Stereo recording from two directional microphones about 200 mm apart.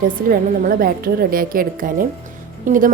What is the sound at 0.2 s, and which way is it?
A woman's voice, 45° right (ahead or behind).